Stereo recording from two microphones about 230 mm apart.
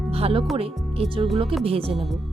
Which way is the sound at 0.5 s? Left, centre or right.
Right.